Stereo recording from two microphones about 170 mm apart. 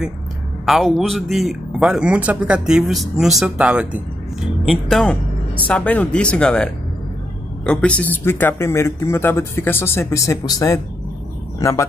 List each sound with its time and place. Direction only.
0.7 s a man's voice: centre (ahead or behind); by 10.8 s 20° left (ahead or behind)